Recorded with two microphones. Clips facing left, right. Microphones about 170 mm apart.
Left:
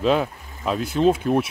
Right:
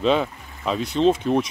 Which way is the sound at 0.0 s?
5° left (ahead or behind).